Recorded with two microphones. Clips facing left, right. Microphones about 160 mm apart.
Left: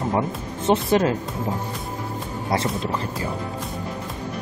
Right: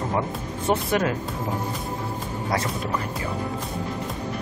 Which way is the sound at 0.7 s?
25° left (ahead or behind).